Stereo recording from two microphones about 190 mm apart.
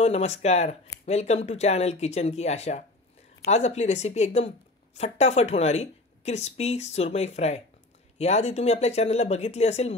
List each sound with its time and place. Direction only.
0.0 s a woman's voice: 35° left (ahead or behind)